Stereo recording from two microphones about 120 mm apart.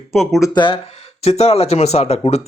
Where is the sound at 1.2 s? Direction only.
60° left (ahead or behind).